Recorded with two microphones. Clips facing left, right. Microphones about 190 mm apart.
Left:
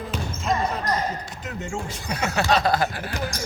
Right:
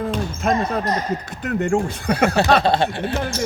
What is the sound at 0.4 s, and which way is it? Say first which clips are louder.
Speech: right 4 dB; 60° right (ahead or behind).